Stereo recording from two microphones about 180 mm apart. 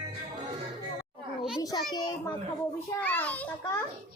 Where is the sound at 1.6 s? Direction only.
20° left (ahead or behind).